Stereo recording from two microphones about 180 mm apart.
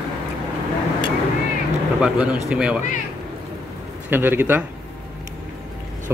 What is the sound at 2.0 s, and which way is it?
Speech, 5° right (ahead or behind).